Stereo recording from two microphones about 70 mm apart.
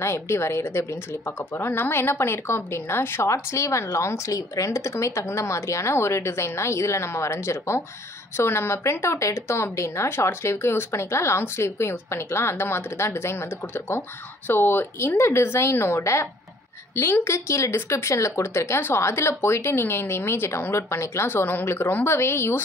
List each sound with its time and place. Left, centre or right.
0.0 s a woman's voice: left